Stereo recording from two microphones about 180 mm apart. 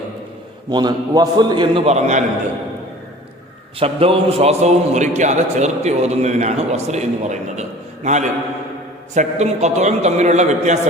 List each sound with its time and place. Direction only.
0.7 s a man's voice: 25° right (ahead or behind); by 2.2 s 40° right (ahead or behind)
3.8 s a man's voice: 30° right (ahead or behind)